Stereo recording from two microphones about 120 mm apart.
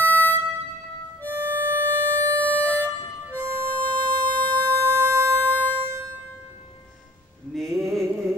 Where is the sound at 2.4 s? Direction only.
15° left (ahead or behind).